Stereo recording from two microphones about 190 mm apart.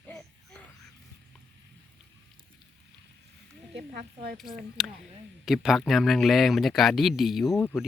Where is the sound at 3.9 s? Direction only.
50° right (ahead or behind).